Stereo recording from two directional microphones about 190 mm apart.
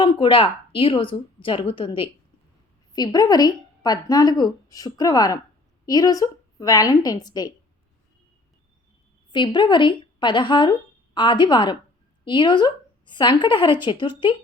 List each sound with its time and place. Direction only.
0.0 s a woman's voice: 25° left (ahead or behind)
9.3 s a woman's voice: 25° left (ahead or behind)